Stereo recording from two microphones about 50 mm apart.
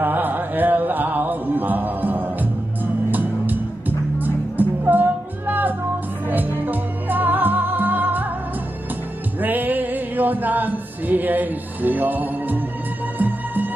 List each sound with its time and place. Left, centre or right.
0.0 s music: right
9.4 s a capella: right